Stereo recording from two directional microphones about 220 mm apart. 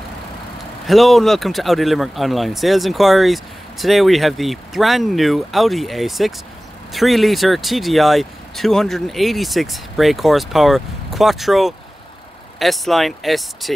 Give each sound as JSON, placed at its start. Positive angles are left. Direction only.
{"t": 0.8, "sound": "speech", "side_deg": 0}